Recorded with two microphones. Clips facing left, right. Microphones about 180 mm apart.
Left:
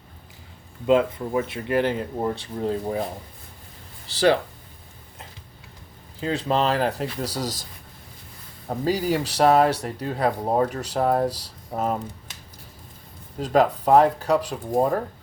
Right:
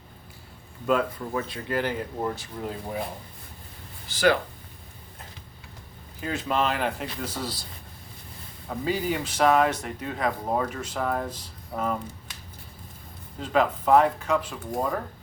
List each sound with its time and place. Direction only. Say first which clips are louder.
0.9 s speech: left 5 dB; 20° left (ahead or behind)
6.1 s speech: left 4 dB; 30° left (ahead or behind)
13.4 s speech: left 4 dB; 40° left (ahead or behind)